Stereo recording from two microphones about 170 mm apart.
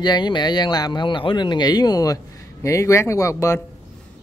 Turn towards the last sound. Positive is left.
turn(degrees=15)  # may be behind; listen again after turning